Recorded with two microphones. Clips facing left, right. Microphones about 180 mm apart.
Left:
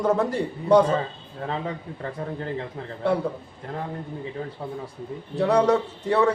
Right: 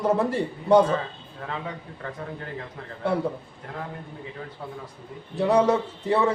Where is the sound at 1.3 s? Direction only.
35° left (ahead or behind).